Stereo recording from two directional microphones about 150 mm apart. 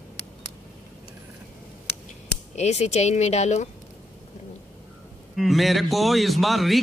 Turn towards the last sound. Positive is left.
turn(degrees=0)  # may be behind; listen again after turning